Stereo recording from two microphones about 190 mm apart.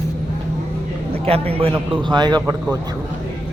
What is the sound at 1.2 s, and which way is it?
Speech, 30° right (ahead or behind).